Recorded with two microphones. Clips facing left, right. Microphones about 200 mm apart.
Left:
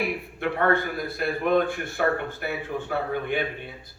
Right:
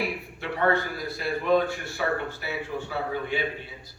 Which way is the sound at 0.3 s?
55° left (ahead or behind).